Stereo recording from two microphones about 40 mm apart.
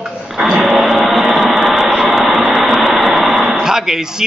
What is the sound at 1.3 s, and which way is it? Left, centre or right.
Vehicle, centre.